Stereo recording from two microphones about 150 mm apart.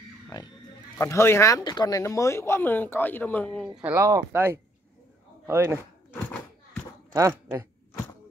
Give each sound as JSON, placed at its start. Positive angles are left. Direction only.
{"t": 0.9, "sound": "speech", "side_deg": 20}
{"t": 3.6, "sound": "speech", "side_deg": -5}
{"t": 3.9, "sound": "speech", "side_deg": -20}
{"t": 7.2, "sound": "speech", "side_deg": -20}